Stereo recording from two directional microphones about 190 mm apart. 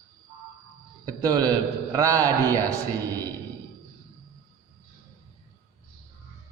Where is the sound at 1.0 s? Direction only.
20° right (ahead or behind).